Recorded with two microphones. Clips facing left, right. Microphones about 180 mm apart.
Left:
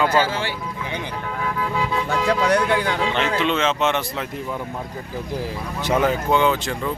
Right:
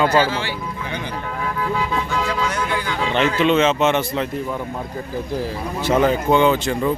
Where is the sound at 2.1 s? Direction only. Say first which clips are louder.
Left 4 dB; 65° left (ahead or behind).